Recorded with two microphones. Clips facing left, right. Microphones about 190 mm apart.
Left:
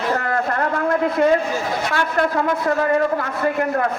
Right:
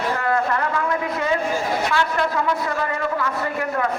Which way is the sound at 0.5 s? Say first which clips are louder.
Left 3 dB; 45° left (ahead or behind).